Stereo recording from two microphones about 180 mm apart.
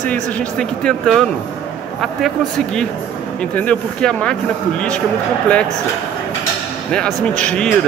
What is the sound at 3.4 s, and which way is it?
Speech, 5° left (ahead or behind).